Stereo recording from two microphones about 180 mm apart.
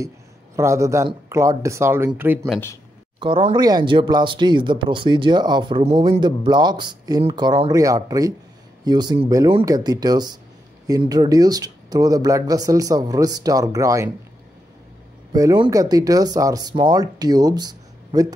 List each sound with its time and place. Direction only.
0.6 s speech: 15° right (ahead or behind)
3.2 s speech: 30° right (ahead or behind)
15.3 s speech: 20° right (ahead or behind)